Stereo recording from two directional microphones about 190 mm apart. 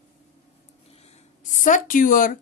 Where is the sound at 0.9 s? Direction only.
35° left (ahead or behind).